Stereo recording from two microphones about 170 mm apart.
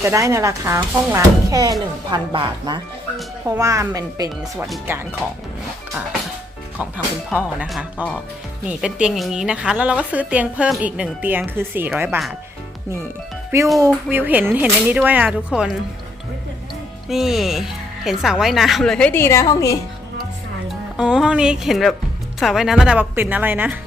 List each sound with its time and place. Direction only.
0.0 s a woman's voice: 15° right (ahead or behind)
7.3 s a woman's voice: 5° right (ahead or behind)
13.8 s a woman's voice: 10° right (ahead or behind)
17.1 s speech: centre (ahead or behind); by 19.7 s 20° left (ahead or behind)
20.9 s a woman's voice: 5° right (ahead or behind)